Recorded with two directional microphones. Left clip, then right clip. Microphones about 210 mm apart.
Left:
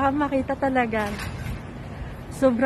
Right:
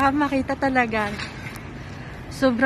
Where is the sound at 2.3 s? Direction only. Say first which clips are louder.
Left 1 dB; 5° left (ahead or behind).